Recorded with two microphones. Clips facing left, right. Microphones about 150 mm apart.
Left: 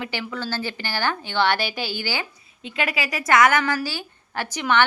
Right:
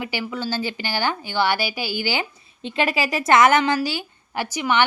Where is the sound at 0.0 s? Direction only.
10° right (ahead or behind).